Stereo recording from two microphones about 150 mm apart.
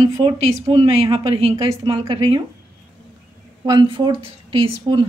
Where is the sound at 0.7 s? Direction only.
35° right (ahead or behind).